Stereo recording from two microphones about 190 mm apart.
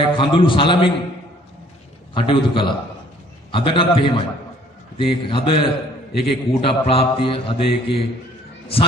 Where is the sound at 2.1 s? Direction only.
25° left (ahead or behind).